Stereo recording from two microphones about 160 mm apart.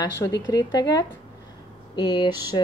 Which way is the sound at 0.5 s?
20° left (ahead or behind).